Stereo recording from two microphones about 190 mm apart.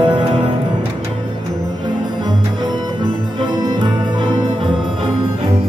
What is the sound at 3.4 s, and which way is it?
Music, 25° right (ahead or behind).